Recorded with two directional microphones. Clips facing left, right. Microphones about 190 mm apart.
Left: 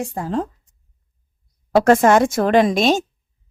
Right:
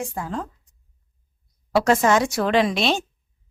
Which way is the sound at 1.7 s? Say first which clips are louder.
Left 5 dB; 50° left (ahead or behind).